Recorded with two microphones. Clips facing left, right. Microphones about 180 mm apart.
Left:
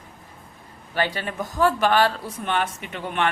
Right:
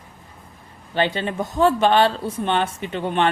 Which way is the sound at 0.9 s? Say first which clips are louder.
Right 4 dB; 25° right (ahead or behind).